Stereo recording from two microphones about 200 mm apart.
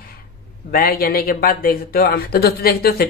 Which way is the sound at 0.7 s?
50° left (ahead or behind).